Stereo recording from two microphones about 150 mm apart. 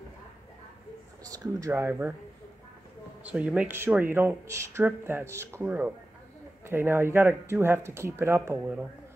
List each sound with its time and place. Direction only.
1.2 s speech: 20° right (ahead or behind)
3.3 s speech: 5° right (ahead or behind)